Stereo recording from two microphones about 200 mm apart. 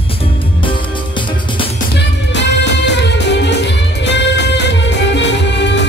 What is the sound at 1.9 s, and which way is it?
Music, 60° left (ahead or behind).